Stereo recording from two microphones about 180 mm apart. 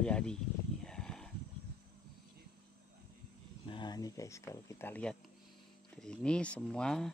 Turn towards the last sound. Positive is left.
turn(degrees=5)  # may be behind; listen again after turning